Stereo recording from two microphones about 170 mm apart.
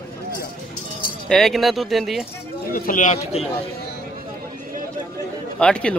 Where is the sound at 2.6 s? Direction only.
55° left (ahead or behind).